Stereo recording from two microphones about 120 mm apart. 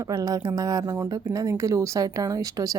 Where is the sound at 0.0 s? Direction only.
30° right (ahead or behind).